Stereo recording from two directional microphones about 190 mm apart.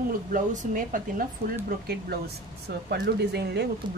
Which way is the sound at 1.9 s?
60° right (ahead or behind).